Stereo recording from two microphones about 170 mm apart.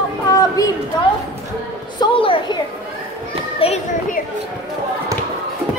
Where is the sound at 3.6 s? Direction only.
35° left (ahead or behind).